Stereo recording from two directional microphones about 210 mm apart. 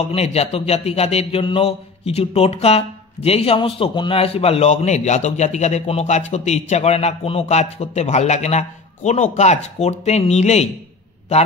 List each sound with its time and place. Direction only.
0.0 s speech: 30° left (ahead or behind)